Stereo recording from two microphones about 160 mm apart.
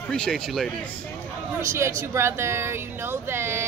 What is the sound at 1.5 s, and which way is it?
Speech, 15° right (ahead or behind).